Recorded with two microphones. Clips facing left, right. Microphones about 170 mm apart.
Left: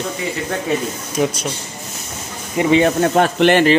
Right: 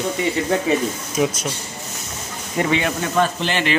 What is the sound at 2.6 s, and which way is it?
Speech, 10° left (ahead or behind).